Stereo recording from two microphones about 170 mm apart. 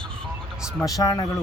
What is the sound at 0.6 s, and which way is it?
Speech, 5° right (ahead or behind).